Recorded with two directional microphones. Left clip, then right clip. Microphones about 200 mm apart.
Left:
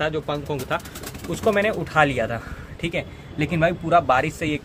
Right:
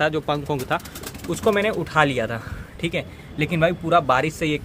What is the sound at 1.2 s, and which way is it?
Speech, 25° right (ahead or behind).